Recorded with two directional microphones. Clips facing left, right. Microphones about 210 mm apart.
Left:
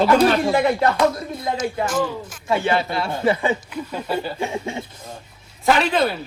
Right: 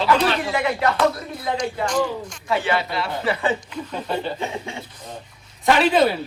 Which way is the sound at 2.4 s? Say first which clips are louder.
Left 2 dB; 25° left (ahead or behind).